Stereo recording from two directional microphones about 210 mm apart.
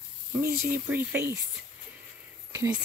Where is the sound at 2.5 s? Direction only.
15° right (ahead or behind).